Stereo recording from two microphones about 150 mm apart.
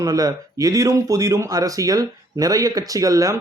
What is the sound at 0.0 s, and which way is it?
Speech, 25° right (ahead or behind).